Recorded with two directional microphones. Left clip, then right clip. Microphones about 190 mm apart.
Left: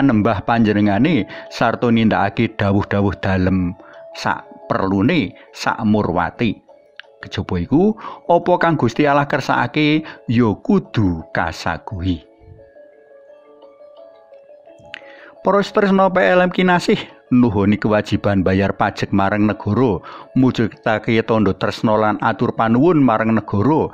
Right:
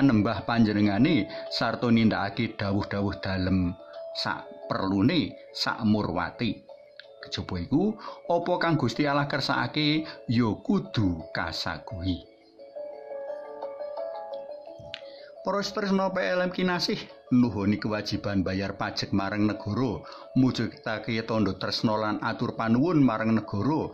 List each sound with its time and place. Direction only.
0.0 s speech: 15° left (ahead or behind)
0.3 s speech: 30° left (ahead or behind)
15.4 s speech: 40° left (ahead or behind)